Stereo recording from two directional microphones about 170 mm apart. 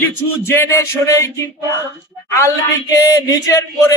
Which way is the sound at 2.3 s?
20° left (ahead or behind).